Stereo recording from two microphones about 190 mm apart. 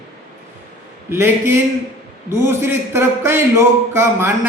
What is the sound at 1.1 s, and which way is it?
A man's voice, 15° right (ahead or behind).